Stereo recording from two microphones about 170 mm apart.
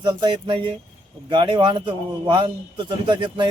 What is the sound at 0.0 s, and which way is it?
A man's voice, 25° right (ahead or behind).